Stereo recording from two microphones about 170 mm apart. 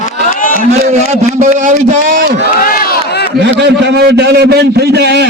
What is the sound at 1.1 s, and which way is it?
A man's voice, 45° right (ahead or behind).